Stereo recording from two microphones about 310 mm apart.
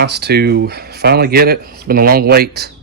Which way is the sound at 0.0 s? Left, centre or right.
Right.